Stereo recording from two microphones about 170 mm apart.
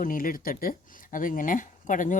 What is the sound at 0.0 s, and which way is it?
Speech, 55° left (ahead or behind).